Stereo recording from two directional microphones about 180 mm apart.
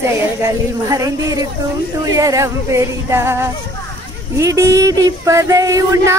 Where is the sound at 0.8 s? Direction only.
20° right (ahead or behind).